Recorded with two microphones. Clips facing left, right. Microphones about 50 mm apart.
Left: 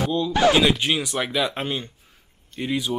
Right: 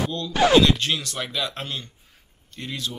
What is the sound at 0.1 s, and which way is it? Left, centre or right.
Speech, centre.